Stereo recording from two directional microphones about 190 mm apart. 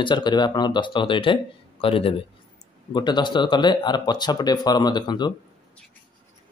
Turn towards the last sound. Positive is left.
turn(degrees=25)  # may be behind; listen again after turning